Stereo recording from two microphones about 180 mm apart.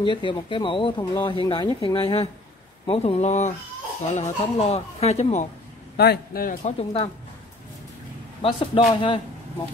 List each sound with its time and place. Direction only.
0.0 s speech: 25° left (ahead or behind)
5.9 s a man's voice: 55° left (ahead or behind)
6.6 s speech: 35° left (ahead or behind)
8.4 s speech: 30° left (ahead or behind)